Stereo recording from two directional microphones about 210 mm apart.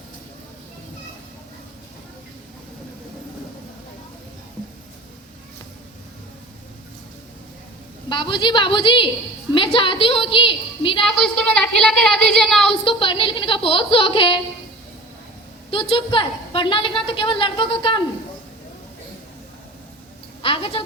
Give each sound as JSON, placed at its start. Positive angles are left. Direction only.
{"t": 8.1, "sound": "a woman's voice", "side_deg": 20}
{"t": 11.0, "sound": "a woman's voice", "side_deg": 0}
{"t": 12.8, "sound": "a woman's voice", "side_deg": 25}
{"t": 15.7, "sound": "a woman's voice", "side_deg": 25}
{"t": 20.4, "sound": "a woman's voice", "side_deg": 25}